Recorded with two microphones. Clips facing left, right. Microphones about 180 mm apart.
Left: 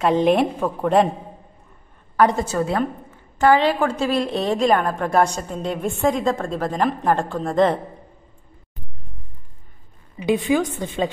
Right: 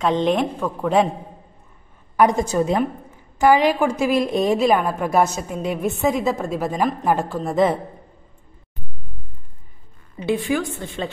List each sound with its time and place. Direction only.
0.0 s a woman's voice: 5° left (ahead or behind)
2.1 s a woman's voice: 15° right (ahead or behind)
10.1 s a woman's voice: 15° left (ahead or behind)